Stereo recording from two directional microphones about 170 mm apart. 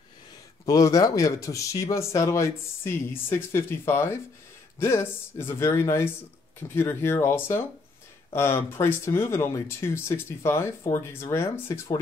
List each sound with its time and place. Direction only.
0.7 s speech: 20° left (ahead or behind)